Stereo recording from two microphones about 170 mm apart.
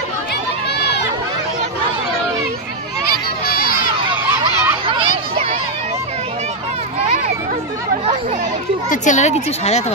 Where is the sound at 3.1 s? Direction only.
65° left (ahead or behind).